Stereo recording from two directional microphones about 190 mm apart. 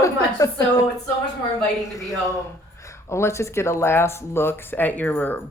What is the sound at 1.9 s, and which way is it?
Speech, 15° left (ahead or behind).